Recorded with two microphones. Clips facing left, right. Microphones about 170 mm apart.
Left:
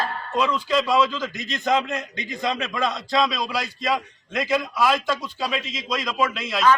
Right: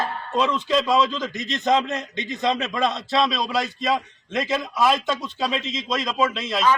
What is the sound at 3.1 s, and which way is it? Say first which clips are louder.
Speech: left 1 dB; centre (ahead or behind).